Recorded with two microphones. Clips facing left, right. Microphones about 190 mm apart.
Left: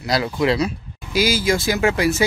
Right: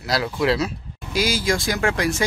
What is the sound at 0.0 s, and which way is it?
Speech, centre (ahead or behind).